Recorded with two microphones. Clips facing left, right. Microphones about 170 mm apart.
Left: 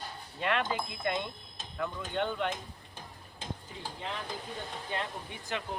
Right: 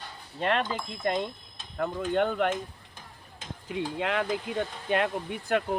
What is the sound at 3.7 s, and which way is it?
Speech, 75° right (ahead or behind).